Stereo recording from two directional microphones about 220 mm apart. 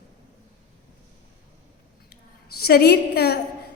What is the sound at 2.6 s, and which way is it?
Speech, 45° left (ahead or behind).